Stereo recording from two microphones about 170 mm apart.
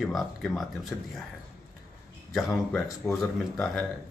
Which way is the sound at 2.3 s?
Centre (ahead or behind).